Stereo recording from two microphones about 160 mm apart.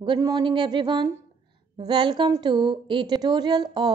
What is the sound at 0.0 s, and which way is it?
A woman's voice, 25° right (ahead or behind).